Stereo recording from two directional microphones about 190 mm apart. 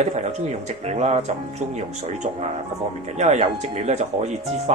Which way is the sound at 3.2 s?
35° right (ahead or behind).